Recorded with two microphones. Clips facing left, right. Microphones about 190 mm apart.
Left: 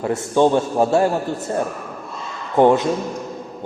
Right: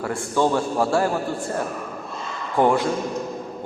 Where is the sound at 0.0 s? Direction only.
20° left (ahead or behind).